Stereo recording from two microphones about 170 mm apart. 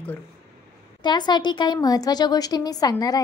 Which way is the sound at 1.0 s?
25° left (ahead or behind).